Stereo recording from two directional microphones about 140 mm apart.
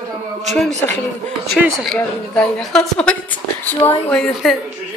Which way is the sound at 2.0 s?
10° left (ahead or behind).